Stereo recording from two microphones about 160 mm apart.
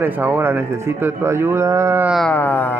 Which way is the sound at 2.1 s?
5° left (ahead or behind).